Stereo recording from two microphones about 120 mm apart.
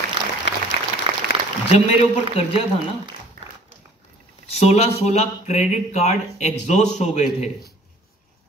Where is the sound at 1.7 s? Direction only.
65° left (ahead or behind).